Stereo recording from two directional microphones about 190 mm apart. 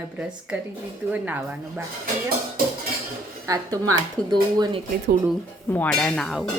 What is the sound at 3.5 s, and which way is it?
Speech, 20° right (ahead or behind).